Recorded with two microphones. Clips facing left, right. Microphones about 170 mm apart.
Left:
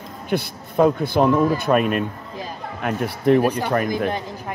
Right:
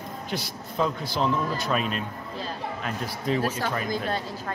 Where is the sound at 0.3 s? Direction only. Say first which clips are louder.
Left 11 dB; 55° left (ahead or behind).